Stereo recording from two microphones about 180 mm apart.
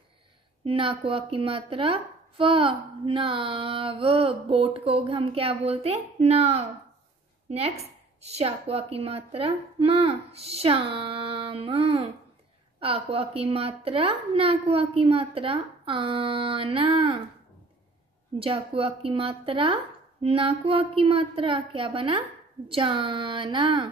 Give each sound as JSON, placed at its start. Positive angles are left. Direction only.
{"t": 0.7, "sound": "a woman's voice", "side_deg": -30}
{"t": 18.4, "sound": "speech", "side_deg": -30}